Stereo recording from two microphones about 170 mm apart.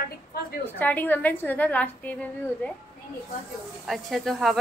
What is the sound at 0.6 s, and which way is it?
A woman's voice, 10° left (ahead or behind).